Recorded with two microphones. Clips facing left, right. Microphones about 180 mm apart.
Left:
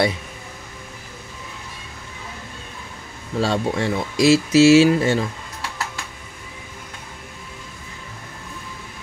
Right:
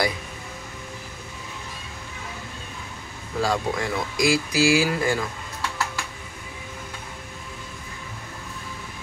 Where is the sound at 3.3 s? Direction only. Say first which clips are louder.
Left 3 dB; 30° left (ahead or behind).